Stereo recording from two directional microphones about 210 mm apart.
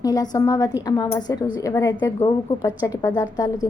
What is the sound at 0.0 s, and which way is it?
A woman's voice, 20° left (ahead or behind).